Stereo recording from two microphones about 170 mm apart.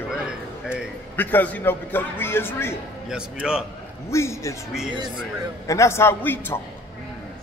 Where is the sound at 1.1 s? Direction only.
10° left (ahead or behind).